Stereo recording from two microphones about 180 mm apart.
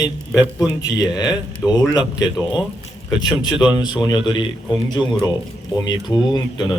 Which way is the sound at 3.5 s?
5° right (ahead or behind).